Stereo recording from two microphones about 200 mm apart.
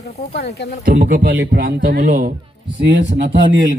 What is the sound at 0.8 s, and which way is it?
Speech, 45° right (ahead or behind).